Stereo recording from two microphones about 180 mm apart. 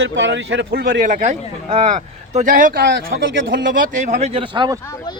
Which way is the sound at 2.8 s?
75° right (ahead or behind).